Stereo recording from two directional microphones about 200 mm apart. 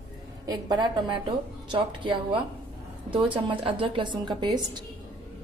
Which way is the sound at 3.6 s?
25° right (ahead or behind).